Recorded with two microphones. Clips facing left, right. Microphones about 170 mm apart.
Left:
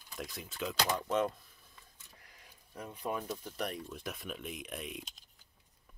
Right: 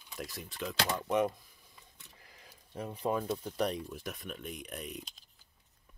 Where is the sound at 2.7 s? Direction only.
30° right (ahead or behind).